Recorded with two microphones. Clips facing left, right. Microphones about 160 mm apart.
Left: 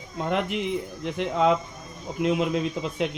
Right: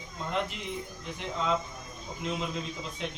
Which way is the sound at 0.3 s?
70° left (ahead or behind).